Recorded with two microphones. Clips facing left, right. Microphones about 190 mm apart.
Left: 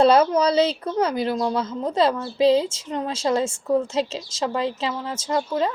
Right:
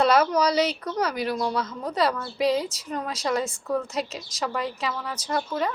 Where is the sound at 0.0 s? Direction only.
30° left (ahead or behind).